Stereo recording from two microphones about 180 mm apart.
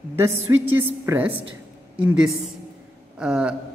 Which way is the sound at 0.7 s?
10° right (ahead or behind).